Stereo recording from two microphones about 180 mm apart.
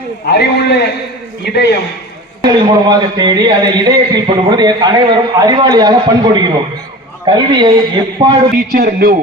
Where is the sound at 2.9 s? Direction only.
25° right (ahead or behind).